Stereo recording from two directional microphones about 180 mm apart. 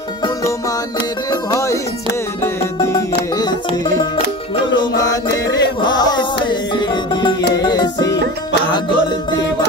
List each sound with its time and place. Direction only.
1.3 s music: 20° left (ahead or behind)
5.5 s music: 25° left (ahead or behind)